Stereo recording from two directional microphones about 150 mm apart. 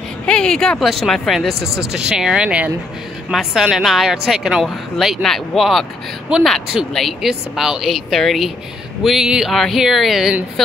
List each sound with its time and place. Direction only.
0.3 s speech: 5° left (ahead or behind)
1.5 s speech: 90° right
1.9 s speech: 5° right (ahead or behind)